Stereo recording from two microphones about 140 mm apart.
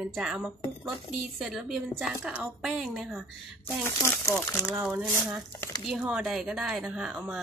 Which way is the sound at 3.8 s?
15° left (ahead or behind).